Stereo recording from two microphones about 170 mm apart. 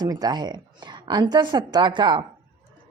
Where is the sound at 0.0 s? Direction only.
25° right (ahead or behind).